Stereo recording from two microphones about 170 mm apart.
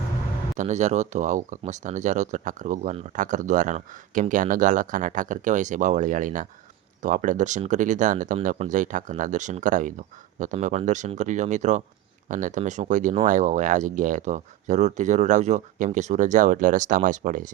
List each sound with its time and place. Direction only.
0.5 s speech: 45° right (ahead or behind)